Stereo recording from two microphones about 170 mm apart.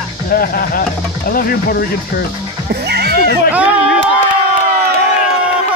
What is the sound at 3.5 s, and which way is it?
Speech, 10° right (ahead or behind).